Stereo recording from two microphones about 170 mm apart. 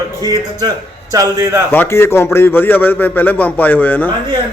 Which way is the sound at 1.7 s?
15° left (ahead or behind).